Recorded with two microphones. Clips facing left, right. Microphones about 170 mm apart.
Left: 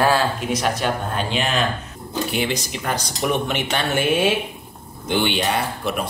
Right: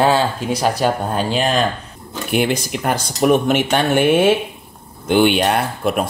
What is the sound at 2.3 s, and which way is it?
Speech, 55° right (ahead or behind).